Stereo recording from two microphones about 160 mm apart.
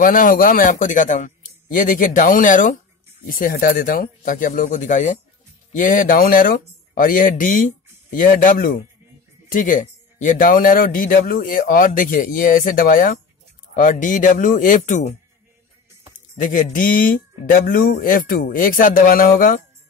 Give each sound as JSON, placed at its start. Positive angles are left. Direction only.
{"t": 0.0, "sound": "a man's voice", "side_deg": 60}
{"t": 16.4, "sound": "a man's voice", "side_deg": 55}